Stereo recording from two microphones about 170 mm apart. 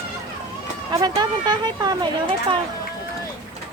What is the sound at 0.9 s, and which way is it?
Speech, 25° right (ahead or behind).